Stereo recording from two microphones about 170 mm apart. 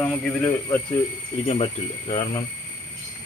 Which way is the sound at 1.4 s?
35° left (ahead or behind).